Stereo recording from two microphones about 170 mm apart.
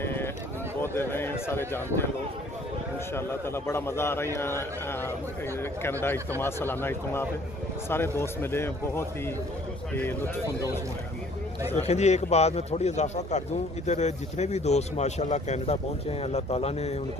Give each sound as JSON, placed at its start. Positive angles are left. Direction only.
{"t": 0.0, "sound": "a sound", "side_deg": 15}
{"t": 0.8, "sound": "a man's voice", "side_deg": 15}
{"t": 3.2, "sound": "a man's voice", "side_deg": 15}
{"t": 11.7, "sound": "speech", "side_deg": 40}